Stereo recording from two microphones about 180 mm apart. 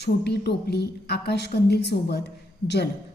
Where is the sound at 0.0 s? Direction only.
65° left (ahead or behind).